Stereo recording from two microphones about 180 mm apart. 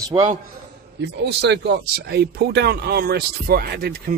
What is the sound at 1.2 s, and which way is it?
Speech, 70° right (ahead or behind).